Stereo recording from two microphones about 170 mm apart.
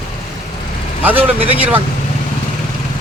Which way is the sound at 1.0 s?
10° right (ahead or behind).